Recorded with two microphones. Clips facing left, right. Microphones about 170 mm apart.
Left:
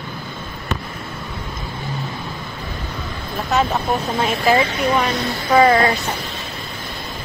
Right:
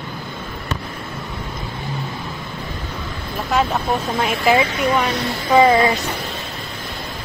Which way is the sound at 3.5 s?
5° right (ahead or behind).